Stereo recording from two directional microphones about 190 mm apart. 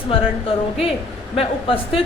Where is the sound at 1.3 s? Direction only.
30° left (ahead or behind).